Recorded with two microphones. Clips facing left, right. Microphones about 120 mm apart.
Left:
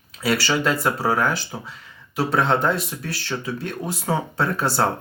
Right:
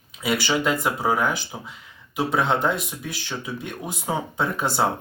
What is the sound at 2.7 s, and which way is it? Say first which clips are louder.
Speech: left 3 dB; centre (ahead or behind).